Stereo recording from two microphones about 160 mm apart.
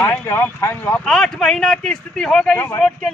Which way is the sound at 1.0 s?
5° left (ahead or behind).